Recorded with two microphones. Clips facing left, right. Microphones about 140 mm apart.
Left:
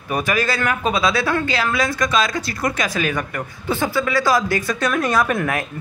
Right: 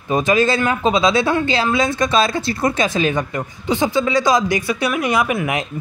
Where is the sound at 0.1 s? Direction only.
25° right (ahead or behind).